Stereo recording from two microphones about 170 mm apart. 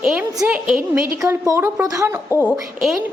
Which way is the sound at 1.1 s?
15° right (ahead or behind).